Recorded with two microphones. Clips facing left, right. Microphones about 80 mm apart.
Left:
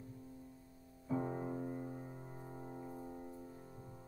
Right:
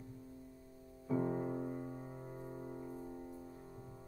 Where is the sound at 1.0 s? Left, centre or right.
Centre.